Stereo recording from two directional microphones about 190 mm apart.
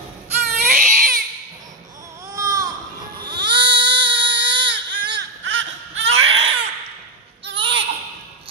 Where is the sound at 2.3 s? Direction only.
20° right (ahead or behind).